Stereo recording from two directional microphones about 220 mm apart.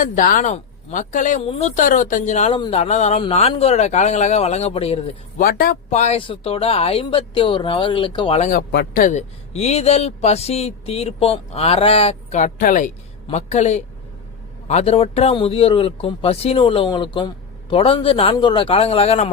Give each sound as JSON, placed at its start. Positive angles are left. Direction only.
{"t": 0.0, "sound": "speech", "side_deg": 35}
{"t": 5.4, "sound": "speech", "side_deg": 45}